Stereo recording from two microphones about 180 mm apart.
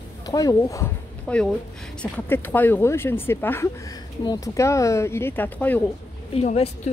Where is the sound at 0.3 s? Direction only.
20° left (ahead or behind).